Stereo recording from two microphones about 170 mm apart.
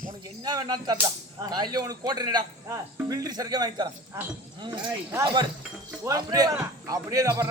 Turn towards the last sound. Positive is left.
turn(degrees=-20)  # may be behind; listen again after turning